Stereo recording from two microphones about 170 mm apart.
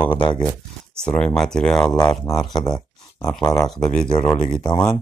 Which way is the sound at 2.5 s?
25° left (ahead or behind).